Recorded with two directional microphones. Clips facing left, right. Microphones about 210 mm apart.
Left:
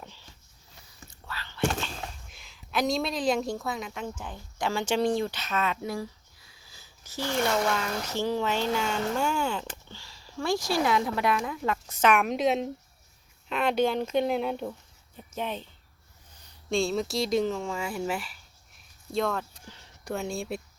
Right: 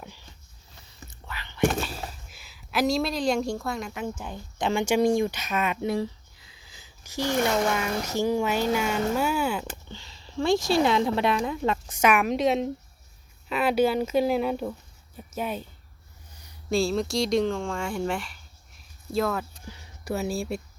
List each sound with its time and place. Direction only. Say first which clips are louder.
0.0 s a sound: right 3 dB; 10° right (ahead or behind)
4.2 s speech: right 3 dB; 15° right (ahead or behind)
10.0 s speech: right 6 dB; 25° right (ahead or behind)
11.9 s speech: right 1 dB; 5° right (ahead or behind)